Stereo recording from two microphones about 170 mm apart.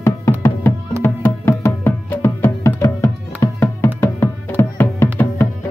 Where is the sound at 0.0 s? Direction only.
15° left (ahead or behind).